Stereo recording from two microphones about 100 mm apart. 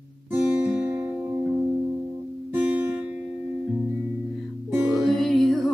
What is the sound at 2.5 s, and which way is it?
Music, 15° right (ahead or behind).